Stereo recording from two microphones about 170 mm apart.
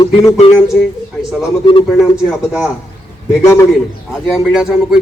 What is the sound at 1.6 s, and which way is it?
Speech, 30° left (ahead or behind).